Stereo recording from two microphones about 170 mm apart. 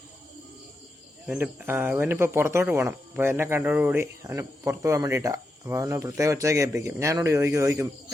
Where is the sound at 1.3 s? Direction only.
10° right (ahead or behind).